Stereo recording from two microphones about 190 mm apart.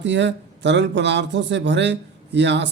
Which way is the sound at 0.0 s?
70° right (ahead or behind).